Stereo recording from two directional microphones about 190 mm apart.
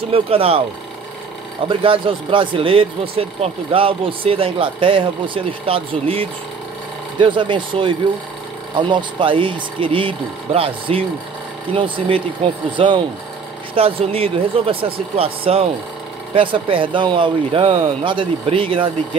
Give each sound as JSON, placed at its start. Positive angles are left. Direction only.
{"t": 0.1, "sound": "speech", "side_deg": -30}
{"t": 1.7, "sound": "speech", "side_deg": -25}